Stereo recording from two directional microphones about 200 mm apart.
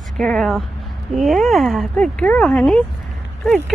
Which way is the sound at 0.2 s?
Centre (ahead or behind).